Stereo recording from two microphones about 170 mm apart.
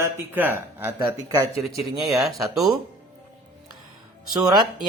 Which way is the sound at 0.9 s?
25° right (ahead or behind).